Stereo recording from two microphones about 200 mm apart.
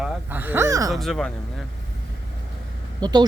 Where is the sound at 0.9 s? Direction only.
Centre (ahead or behind).